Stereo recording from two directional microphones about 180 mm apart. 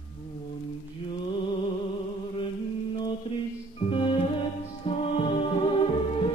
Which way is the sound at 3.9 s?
30° left (ahead or behind).